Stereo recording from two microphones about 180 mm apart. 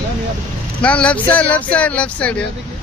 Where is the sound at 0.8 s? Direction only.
5° left (ahead or behind).